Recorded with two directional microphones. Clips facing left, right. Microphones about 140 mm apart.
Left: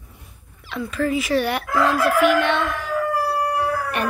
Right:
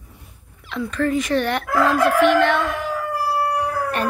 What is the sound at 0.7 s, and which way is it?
Speech, 5° left (ahead or behind).